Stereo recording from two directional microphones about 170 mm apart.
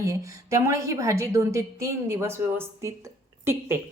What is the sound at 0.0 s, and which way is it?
A woman's voice, 20° right (ahead or behind).